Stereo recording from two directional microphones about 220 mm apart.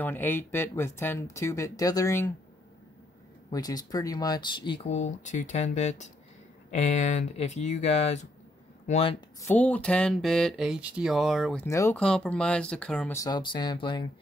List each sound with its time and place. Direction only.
0.0 s speech: 10° left (ahead or behind)
3.4 s speech: 15° left (ahead or behind)
9.4 s speech: 5° left (ahead or behind)
11.6 s speech: 10° left (ahead or behind)